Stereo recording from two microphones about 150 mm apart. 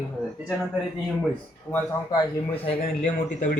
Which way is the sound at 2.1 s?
35° left (ahead or behind).